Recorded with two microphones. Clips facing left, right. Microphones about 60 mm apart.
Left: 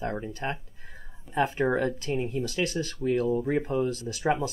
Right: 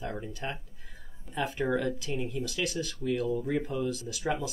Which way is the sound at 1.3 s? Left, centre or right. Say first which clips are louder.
Left 4 dB; left.